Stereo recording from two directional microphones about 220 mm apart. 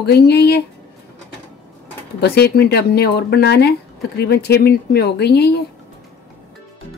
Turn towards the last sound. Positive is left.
turn(degrees=50)  # may be behind; listen again after turning